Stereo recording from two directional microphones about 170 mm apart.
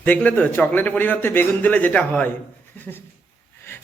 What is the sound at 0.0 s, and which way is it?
A man's voice, 10° left (ahead or behind).